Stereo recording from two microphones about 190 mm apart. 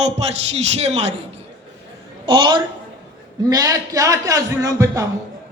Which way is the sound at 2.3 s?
25° right (ahead or behind).